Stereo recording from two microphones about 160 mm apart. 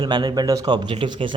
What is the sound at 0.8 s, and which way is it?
Speech, 35° right (ahead or behind).